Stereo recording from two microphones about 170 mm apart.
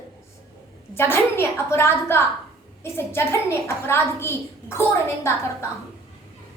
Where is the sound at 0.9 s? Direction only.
15° left (ahead or behind).